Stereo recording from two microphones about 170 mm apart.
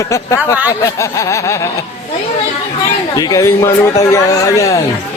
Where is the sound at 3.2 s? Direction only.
20° left (ahead or behind).